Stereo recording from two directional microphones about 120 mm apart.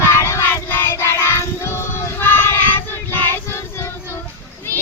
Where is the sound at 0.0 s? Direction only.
20° left (ahead or behind).